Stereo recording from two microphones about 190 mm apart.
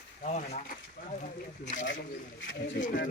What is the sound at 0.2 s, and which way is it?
Speech, 40° left (ahead or behind).